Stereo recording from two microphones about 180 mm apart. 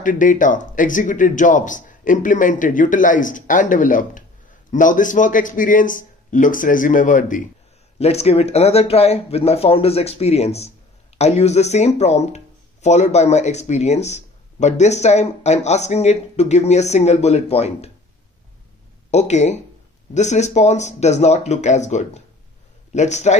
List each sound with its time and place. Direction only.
0.0 s speech: 45° left (ahead or behind)
8.0 s speech: 35° left (ahead or behind)
19.0 s speech: 40° left (ahead or behind)